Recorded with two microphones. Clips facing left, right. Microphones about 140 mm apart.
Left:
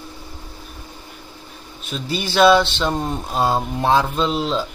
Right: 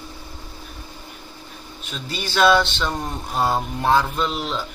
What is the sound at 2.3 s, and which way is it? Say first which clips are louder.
Speech: left 3 dB; 25° left (ahead or behind).